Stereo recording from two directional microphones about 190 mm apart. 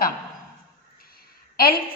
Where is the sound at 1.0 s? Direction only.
55° left (ahead or behind).